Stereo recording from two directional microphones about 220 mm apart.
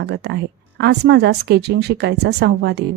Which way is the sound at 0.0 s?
50° right (ahead or behind).